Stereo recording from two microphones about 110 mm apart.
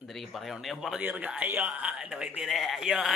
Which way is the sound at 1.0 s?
15° right (ahead or behind).